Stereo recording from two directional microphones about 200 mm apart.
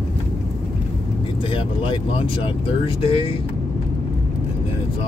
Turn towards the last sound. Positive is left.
turn(degrees=25)  # may be behind; listen again after turning